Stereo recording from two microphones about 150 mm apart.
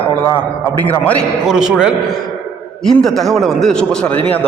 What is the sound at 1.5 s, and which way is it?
A man's voice, 5° right (ahead or behind).